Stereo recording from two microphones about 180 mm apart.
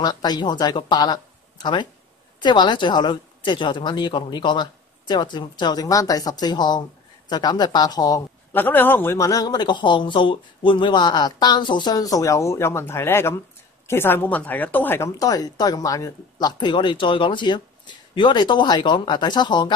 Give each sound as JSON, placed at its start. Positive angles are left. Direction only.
{"t": 0.0, "sound": "a woman's voice", "side_deg": 20}
{"t": 8.5, "sound": "a woman's voice", "side_deg": 10}